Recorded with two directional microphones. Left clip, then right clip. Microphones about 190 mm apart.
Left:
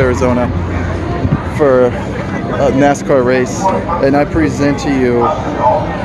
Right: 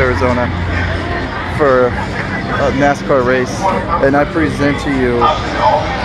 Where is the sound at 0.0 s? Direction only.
35° left (ahead or behind).